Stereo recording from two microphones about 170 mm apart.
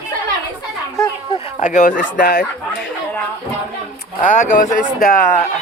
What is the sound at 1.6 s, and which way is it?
Speech, 45° left (ahead or behind).